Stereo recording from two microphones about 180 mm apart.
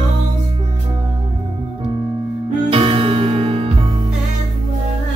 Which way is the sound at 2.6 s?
30° right (ahead or behind).